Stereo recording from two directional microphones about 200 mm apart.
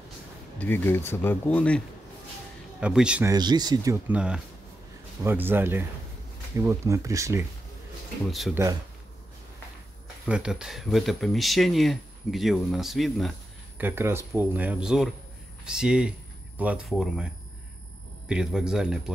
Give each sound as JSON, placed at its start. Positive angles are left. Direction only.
{"t": 0.6, "sound": "speech", "side_deg": 10}
{"t": 2.8, "sound": "speech", "side_deg": -5}
{"t": 3.3, "sound": "speech", "side_deg": -20}
{"t": 4.1, "sound": "speech", "side_deg": -5}
{"t": 8.3, "sound": "speech", "side_deg": 0}
{"t": 10.2, "sound": "speech", "side_deg": -5}
{"t": 13.7, "sound": "speech", "side_deg": -10}
{"t": 18.3, "sound": "speech", "side_deg": -5}